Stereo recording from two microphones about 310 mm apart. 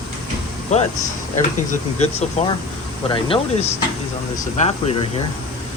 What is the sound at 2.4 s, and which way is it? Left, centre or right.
Speech, left.